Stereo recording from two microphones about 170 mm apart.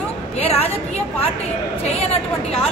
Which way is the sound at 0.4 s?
35° left (ahead or behind).